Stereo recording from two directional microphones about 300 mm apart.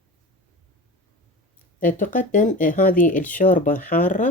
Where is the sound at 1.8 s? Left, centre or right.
Left.